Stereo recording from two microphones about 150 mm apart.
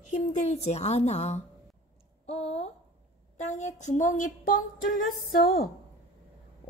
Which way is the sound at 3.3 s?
50° left (ahead or behind).